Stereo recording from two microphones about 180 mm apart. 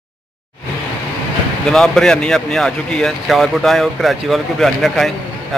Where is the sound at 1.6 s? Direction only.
5° left (ahead or behind).